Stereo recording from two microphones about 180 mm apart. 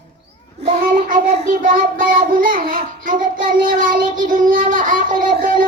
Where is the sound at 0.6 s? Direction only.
45° right (ahead or behind).